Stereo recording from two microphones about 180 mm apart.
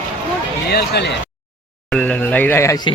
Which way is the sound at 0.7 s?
65° left (ahead or behind).